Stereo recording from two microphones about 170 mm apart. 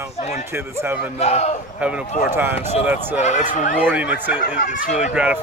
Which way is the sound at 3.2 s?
45° left (ahead or behind).